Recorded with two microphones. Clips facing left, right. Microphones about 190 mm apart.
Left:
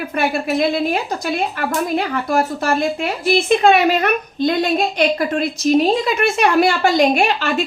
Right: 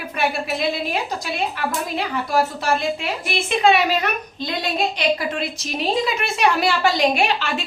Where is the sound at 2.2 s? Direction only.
50° left (ahead or behind).